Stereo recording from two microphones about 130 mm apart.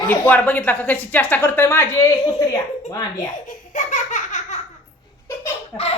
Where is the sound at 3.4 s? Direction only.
70° left (ahead or behind).